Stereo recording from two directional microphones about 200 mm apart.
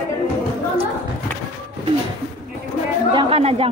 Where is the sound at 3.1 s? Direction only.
30° right (ahead or behind).